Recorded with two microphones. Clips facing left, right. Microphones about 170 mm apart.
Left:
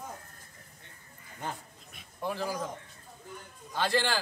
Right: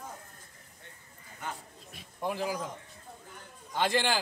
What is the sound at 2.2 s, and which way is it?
Speech, 15° right (ahead or behind).